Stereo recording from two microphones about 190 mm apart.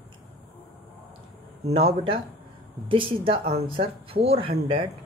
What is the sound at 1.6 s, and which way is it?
Speech, 30° right (ahead or behind).